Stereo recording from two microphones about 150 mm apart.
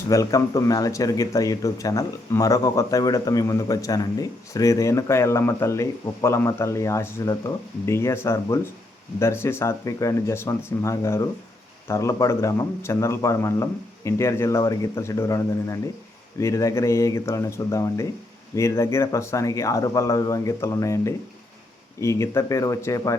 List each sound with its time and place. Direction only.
0.1 s speech: 20° left (ahead or behind)